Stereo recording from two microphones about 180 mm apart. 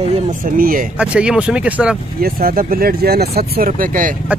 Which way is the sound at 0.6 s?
50° right (ahead or behind).